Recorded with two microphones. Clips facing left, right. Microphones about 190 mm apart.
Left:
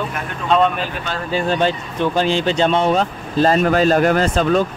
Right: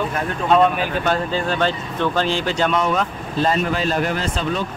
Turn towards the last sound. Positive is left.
turn(degrees=45)  # may be behind; listen again after turning